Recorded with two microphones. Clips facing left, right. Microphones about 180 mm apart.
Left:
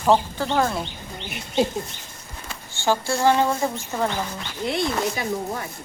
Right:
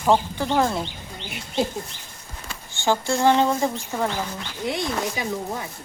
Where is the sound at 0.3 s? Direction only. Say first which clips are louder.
Right 1 dB; 15° right (ahead or behind).